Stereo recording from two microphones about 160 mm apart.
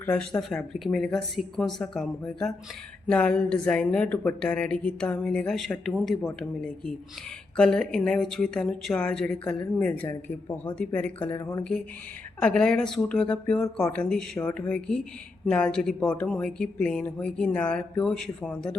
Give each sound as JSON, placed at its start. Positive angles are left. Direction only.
{"t": 0.0, "sound": "a woman's voice", "side_deg": 5}
{"t": 12.4, "sound": "speech", "side_deg": 5}